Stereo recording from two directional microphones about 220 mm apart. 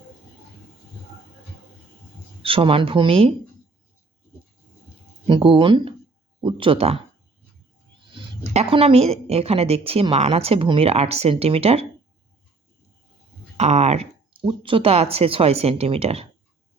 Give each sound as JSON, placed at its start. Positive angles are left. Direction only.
{"t": 2.4, "sound": "speech", "side_deg": -25}
{"t": 5.3, "sound": "speech", "side_deg": -25}
{"t": 8.1, "sound": "speech", "side_deg": -25}
{"t": 13.6, "sound": "speech", "side_deg": -30}